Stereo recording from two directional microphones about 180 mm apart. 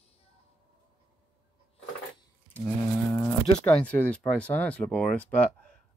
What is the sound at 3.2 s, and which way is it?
Speech, 5° left (ahead or behind).